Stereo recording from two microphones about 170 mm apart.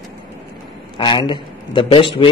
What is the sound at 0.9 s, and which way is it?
A man's voice, 25° left (ahead or behind).